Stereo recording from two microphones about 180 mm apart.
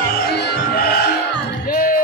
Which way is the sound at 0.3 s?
65° left (ahead or behind).